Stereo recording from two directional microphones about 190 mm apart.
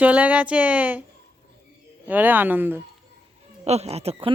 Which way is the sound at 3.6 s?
35° right (ahead or behind).